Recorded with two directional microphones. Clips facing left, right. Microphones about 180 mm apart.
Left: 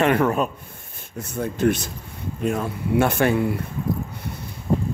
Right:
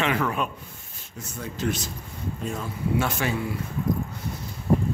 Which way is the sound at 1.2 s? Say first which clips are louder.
Left 8 dB; 55° left (ahead or behind).